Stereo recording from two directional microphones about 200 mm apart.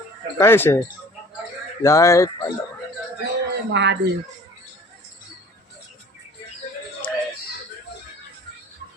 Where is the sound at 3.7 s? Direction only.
60° right (ahead or behind).